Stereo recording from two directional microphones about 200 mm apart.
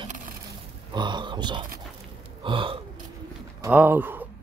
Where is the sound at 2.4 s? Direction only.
25° right (ahead or behind).